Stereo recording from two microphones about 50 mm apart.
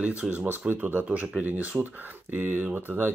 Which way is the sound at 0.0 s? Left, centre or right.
Right.